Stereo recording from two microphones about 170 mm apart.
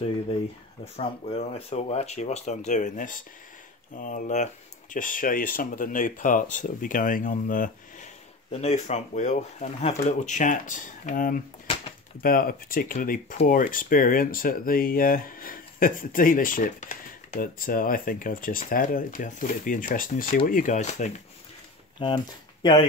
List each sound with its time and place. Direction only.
0.9 s speech: 35° left (ahead or behind)
22.0 s speech: 25° left (ahead or behind)